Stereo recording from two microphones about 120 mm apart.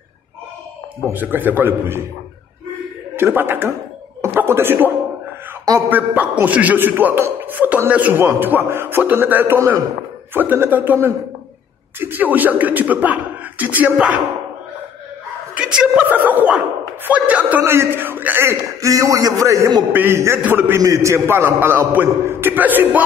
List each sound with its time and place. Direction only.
1.0 s a man's voice: 15° right (ahead or behind)
3.2 s a man's voice: 20° right (ahead or behind)
4.2 s a sound: 20° right (ahead or behind)
5.9 s a man's voice: 15° right (ahead or behind)
15.5 s a sound: 5° right (ahead or behind)
17.6 s a man's voice: 20° right (ahead or behind)